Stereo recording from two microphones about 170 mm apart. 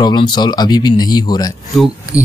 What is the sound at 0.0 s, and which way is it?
Speech, 25° left (ahead or behind).